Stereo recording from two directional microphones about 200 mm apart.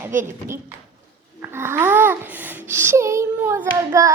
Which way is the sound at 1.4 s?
10° right (ahead or behind).